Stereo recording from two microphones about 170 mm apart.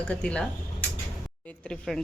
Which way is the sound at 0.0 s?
5° left (ahead or behind).